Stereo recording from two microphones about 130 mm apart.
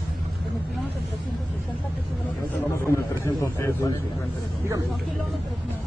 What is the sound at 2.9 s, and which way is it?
A man's voice, 20° left (ahead or behind).